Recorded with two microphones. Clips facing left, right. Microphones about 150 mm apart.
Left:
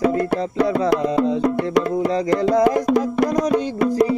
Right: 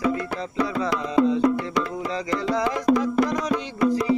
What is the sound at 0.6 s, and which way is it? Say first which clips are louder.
Music: left 6 dB; 60° left (ahead or behind).